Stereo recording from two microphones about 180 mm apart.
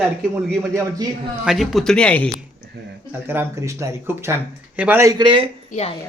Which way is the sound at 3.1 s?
10° right (ahead or behind).